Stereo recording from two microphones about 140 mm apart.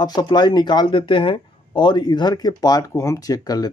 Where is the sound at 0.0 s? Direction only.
30° left (ahead or behind).